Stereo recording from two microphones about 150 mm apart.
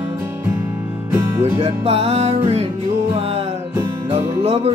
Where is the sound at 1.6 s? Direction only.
40° right (ahead or behind).